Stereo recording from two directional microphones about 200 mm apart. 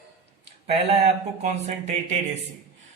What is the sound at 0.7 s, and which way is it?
Speech, 30° right (ahead or behind).